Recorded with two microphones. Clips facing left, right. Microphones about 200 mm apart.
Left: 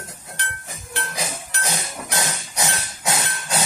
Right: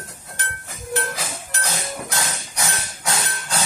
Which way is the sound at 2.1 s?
20° left (ahead or behind).